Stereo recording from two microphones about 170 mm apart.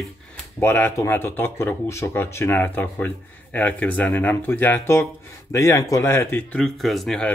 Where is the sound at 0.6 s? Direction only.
15° left (ahead or behind).